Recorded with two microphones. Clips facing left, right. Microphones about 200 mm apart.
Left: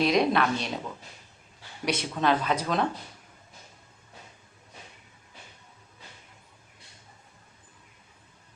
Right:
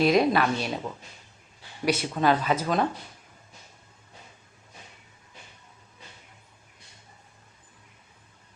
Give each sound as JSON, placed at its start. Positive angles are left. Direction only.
{"t": 0.0, "sound": "speech", "side_deg": -5}
{"t": 1.8, "sound": "speech", "side_deg": -5}